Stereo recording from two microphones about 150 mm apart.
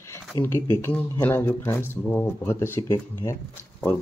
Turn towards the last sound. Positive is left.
turn(degrees=15)  # may be behind; listen again after turning